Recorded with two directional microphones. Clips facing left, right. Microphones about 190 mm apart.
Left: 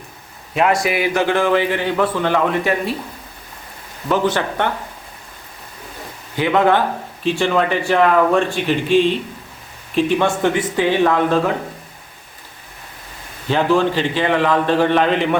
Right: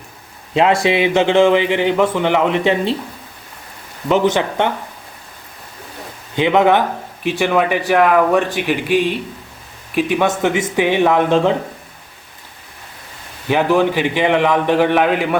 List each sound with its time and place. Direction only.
0.5 s a man's voice: 25° right (ahead or behind)
4.1 s a man's voice: 20° right (ahead or behind)
6.3 s a man's voice: 20° right (ahead or behind)
13.5 s a man's voice: 15° right (ahead or behind)